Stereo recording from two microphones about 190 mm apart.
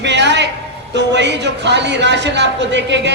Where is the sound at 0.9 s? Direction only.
65° right (ahead or behind).